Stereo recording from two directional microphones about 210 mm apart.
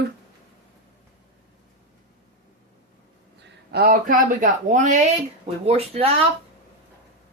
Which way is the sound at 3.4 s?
50° right (ahead or behind).